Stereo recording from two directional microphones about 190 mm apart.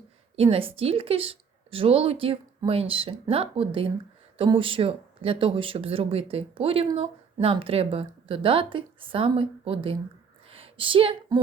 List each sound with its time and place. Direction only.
0.3 s speech: 30° right (ahead or behind)